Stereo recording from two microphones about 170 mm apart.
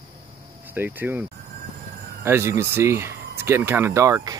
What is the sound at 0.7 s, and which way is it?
Speech, 10° right (ahead or behind).